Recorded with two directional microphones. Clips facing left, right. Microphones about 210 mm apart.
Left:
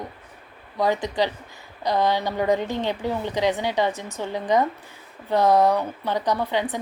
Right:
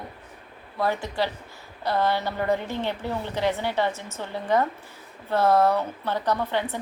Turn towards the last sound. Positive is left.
turn(degrees=15)  # may be behind; listen again after turning